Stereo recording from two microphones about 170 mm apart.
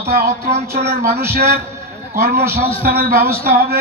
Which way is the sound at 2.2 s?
65° right (ahead or behind).